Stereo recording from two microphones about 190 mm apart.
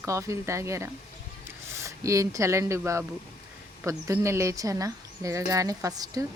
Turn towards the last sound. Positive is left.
turn(degrees=-20)  # may be behind; listen again after turning